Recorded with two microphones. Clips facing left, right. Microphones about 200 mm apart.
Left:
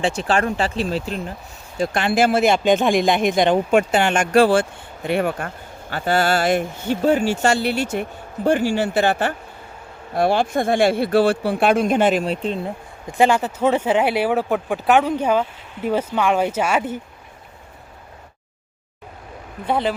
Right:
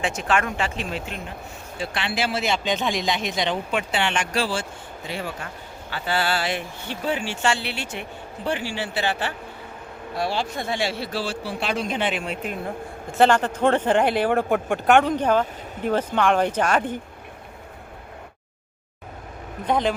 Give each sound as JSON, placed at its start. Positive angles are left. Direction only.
{"t": 0.0, "sound": "speech", "side_deg": 30}
{"t": 1.8, "sound": "speech", "side_deg": 45}
{"t": 5.9, "sound": "speech", "side_deg": 45}
{"t": 13.1, "sound": "speech", "side_deg": 10}
{"t": 19.6, "sound": "speech", "side_deg": 5}